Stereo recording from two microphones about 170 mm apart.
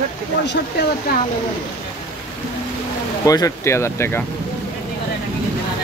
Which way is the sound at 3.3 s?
20° left (ahead or behind).